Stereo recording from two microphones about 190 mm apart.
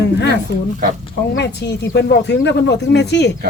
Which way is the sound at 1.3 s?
65° left (ahead or behind).